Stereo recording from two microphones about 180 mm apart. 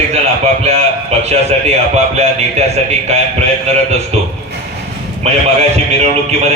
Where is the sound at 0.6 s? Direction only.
35° right (ahead or behind).